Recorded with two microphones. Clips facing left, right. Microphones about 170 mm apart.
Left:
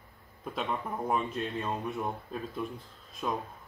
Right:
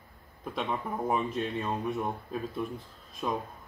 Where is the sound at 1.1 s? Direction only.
Centre (ahead or behind).